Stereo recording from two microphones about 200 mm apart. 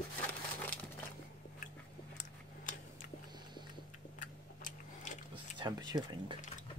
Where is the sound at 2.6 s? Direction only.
40° left (ahead or behind).